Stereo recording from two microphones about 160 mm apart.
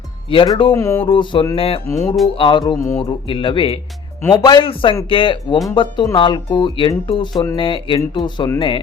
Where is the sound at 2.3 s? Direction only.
30° left (ahead or behind).